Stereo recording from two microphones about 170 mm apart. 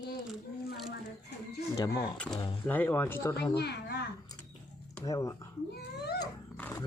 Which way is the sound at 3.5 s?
75° left (ahead or behind).